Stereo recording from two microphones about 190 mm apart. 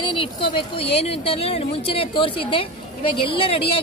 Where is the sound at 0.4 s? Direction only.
30° left (ahead or behind).